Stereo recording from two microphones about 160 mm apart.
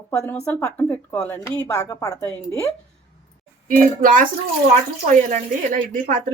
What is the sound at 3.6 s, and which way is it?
Speech, 55° right (ahead or behind).